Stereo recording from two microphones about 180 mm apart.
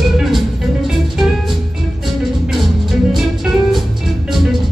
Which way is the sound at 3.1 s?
Centre (ahead or behind).